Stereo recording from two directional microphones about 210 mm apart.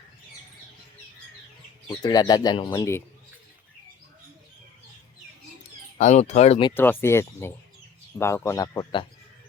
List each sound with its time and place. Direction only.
2.0 s speech: 20° left (ahead or behind)
6.0 s speech: 35° left (ahead or behind)
6.7 s speech: 10° left (ahead or behind)